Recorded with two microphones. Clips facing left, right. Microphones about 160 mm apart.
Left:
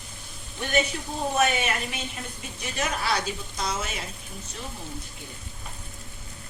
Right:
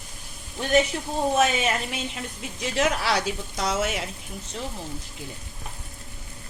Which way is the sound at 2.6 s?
90° right.